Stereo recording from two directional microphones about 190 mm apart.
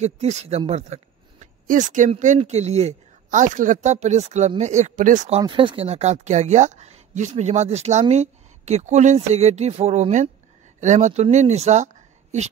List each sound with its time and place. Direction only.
0.0 s speech: 35° right (ahead or behind)
5.4 s speech: 25° right (ahead or behind)